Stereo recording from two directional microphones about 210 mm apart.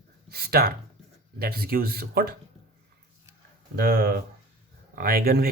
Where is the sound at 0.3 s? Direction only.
45° right (ahead or behind).